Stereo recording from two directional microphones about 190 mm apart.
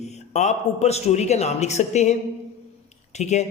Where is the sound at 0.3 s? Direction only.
35° left (ahead or behind).